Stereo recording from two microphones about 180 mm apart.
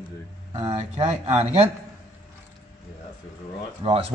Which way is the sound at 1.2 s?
35° right (ahead or behind).